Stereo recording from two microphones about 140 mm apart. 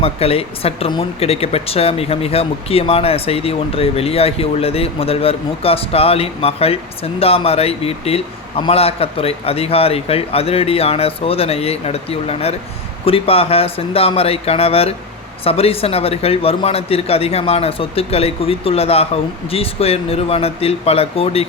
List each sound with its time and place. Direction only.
0.0 s speech: 45° left (ahead or behind)